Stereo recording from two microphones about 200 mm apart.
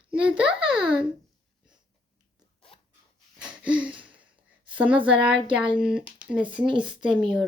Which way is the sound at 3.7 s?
5° right (ahead or behind).